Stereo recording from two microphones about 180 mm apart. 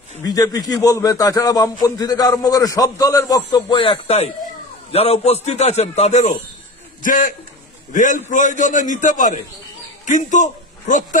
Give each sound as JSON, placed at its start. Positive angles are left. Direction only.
{"t": 0.2, "sound": "a man's voice", "side_deg": 20}